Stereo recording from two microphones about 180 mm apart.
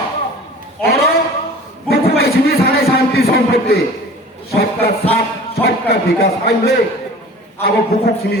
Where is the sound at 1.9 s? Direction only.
60° left (ahead or behind).